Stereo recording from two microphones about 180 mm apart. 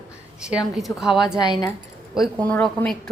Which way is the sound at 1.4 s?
20° left (ahead or behind).